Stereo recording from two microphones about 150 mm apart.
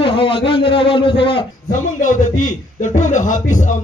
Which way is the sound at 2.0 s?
55° left (ahead or behind).